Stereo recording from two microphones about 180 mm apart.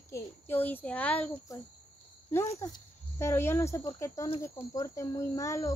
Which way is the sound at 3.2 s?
15° left (ahead or behind).